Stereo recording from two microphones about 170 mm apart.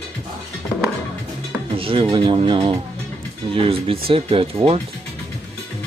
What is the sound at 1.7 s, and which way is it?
Speech, 30° right (ahead or behind).